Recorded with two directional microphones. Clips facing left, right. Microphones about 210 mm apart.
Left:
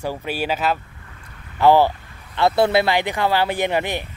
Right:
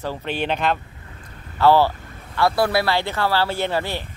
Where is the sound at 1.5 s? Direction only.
15° left (ahead or behind).